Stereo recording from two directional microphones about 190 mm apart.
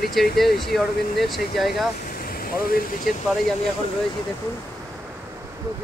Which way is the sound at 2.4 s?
50° left (ahead or behind).